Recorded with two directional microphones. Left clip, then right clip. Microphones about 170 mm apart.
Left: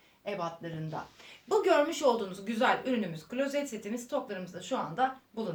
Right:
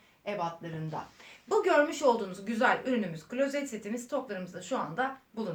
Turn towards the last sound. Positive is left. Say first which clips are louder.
# left 3 dB
turn(degrees=10)  # may be behind; listen again after turning